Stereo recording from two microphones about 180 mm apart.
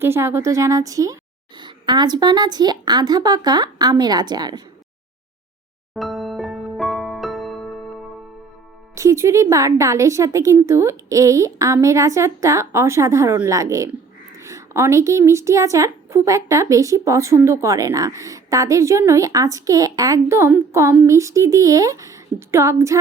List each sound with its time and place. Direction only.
0.0 s speech: 15° right (ahead or behind)
5.9 s music: centre (ahead or behind)
9.0 s a woman's voice: 15° right (ahead or behind)